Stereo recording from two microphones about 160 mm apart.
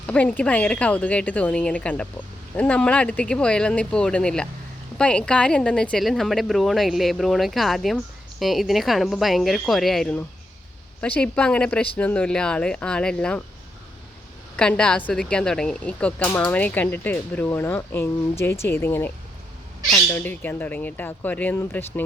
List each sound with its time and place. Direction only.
0.0 s speech: 10° left (ahead or behind)
14.5 s speech: 5° left (ahead or behind)
20.1 s speech: 10° left (ahead or behind)